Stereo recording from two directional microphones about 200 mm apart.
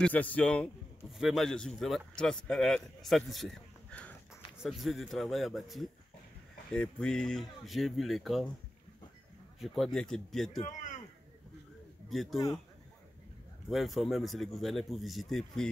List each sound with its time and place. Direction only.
0.0 s a man's voice: 5° left (ahead or behind)
9.6 s a man's voice: centre (ahead or behind)
10.6 s a man's voice: 40° left (ahead or behind)
12.1 s a man's voice: centre (ahead or behind)
13.7 s a man's voice: centre (ahead or behind)